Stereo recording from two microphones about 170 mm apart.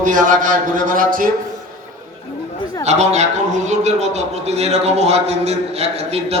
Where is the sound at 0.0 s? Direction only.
50° right (ahead or behind).